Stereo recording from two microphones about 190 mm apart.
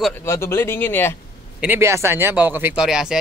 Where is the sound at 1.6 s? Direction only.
10° right (ahead or behind).